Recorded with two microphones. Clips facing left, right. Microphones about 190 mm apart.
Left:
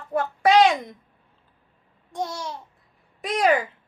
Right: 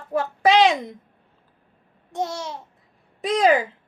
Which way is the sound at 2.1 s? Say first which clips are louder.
Right 2 dB; 25° right (ahead or behind).